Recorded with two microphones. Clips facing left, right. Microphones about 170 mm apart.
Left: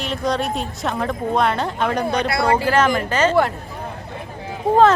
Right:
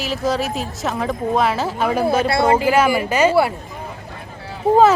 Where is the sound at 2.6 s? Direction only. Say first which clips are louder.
Right 2 dB; 10° right (ahead or behind).